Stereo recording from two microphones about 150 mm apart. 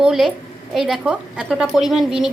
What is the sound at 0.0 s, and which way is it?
A woman's voice, centre (ahead or behind).